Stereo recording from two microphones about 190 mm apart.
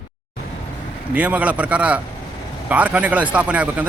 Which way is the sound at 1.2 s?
5° right (ahead or behind).